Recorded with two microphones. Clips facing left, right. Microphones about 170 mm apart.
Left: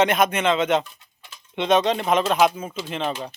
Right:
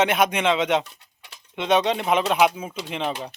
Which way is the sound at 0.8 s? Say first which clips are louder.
Even; 70° right (ahead or behind).